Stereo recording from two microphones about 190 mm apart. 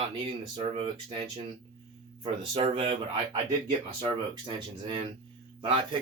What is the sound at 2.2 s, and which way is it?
Speech, 30° right (ahead or behind).